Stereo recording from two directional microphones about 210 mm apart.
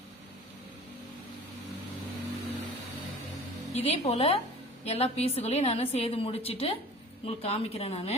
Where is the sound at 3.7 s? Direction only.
30° left (ahead or behind).